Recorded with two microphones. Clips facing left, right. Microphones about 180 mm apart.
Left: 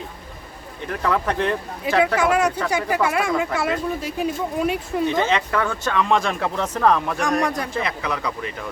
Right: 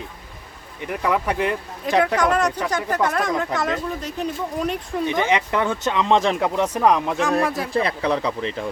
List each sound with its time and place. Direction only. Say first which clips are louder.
0.9 s speech: even; 15° right (ahead or behind)
2.1 s speech: left 1 dB; 5° left (ahead or behind)
5.0 s speech: right 1 dB; 15° right (ahead or behind)
7.2 s speech: right 1 dB; 5° right (ahead or behind)
7.7 s speech: right 5 dB; 30° right (ahead or behind)